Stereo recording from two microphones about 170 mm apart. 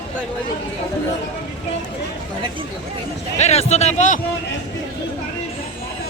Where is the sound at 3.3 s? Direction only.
40° left (ahead or behind).